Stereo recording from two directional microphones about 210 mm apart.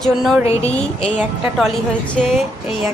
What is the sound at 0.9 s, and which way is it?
Speech, 30° left (ahead or behind).